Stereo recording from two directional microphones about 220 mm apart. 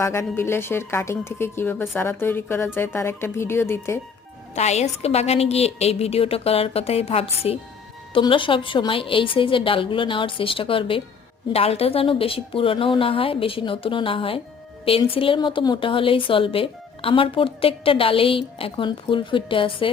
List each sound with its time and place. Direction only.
0.0 s a woman's voice: 10° left (ahead or behind)
4.5 s a woman's voice: 30° left (ahead or behind)